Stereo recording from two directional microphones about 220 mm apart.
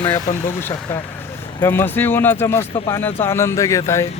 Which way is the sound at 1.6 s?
10° left (ahead or behind).